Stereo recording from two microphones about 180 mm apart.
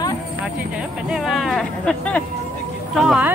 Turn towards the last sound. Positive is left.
turn(degrees=0)  # may be behind; listen again after turning